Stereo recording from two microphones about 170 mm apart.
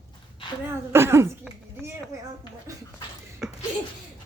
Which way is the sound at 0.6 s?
15° right (ahead or behind).